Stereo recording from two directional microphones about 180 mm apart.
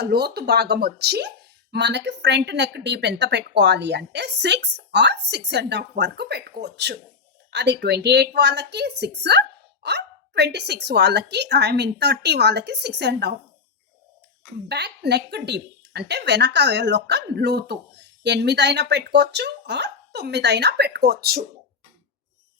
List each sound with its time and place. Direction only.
0.0 s speech: 65° right (ahead or behind)
14.7 s speech: 70° right (ahead or behind)